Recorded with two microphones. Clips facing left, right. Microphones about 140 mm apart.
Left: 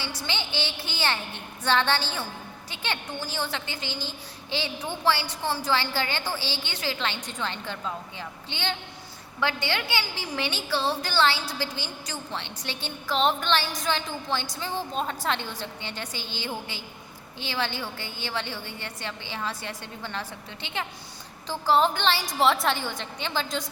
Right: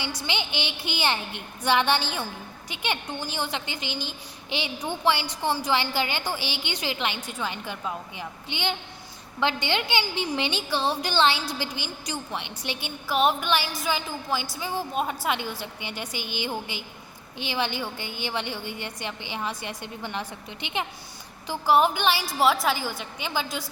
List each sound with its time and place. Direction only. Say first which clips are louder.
0.2 s a woman's voice: right 1 dB; 15° right (ahead or behind)